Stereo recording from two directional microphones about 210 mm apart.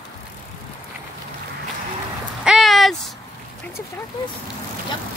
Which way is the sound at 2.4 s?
Centre (ahead or behind).